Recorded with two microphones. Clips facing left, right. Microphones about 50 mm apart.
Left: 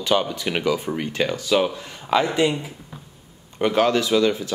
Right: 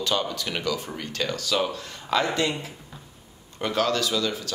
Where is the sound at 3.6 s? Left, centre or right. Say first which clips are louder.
Left 5 dB; left.